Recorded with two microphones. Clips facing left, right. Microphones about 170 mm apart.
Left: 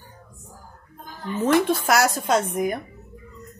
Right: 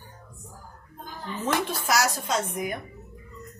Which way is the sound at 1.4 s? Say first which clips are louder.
Left 8 dB; 55° left (ahead or behind).